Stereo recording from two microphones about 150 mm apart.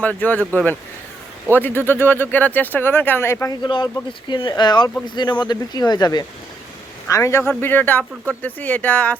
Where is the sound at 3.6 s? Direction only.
30° left (ahead or behind); by 9.1 s 10° left (ahead or behind).